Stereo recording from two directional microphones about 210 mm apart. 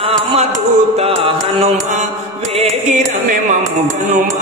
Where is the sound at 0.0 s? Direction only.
25° right (ahead or behind).